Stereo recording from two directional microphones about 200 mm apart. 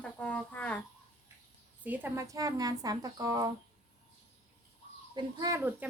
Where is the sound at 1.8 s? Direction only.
10° right (ahead or behind).